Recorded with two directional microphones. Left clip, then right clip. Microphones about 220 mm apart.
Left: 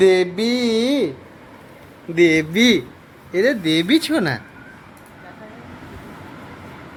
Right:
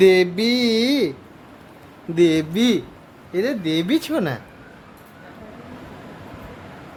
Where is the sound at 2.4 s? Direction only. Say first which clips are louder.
Left 4 dB; centre (ahead or behind).